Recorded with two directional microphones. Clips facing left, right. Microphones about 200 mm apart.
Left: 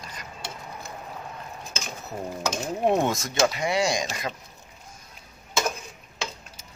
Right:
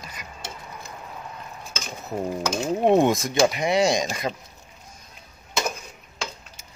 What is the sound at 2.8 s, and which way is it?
Speech, 20° right (ahead or behind).